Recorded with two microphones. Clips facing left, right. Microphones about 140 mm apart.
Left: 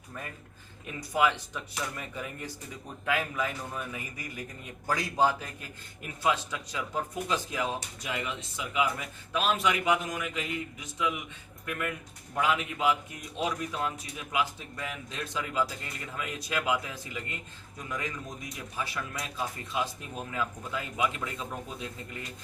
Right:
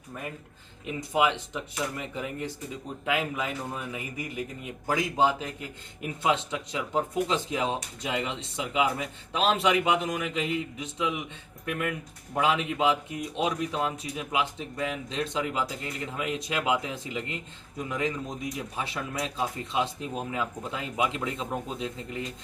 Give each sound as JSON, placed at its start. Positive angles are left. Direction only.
{"t": 0.9, "sound": "a man's voice", "side_deg": -20}
{"t": 12.3, "sound": "a man's voice", "side_deg": -25}